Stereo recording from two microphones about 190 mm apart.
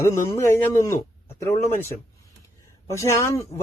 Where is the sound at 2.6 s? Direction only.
15° left (ahead or behind).